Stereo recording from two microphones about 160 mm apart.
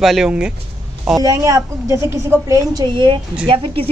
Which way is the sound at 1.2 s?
20° right (ahead or behind).